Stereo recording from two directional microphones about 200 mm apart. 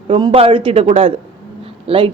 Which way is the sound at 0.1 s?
25° right (ahead or behind).